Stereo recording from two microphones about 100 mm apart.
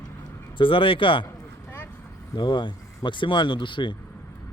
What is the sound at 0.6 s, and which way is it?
Speech, 60° left (ahead or behind).